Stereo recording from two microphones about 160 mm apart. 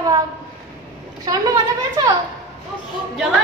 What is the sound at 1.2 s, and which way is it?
Speech, 25° right (ahead or behind).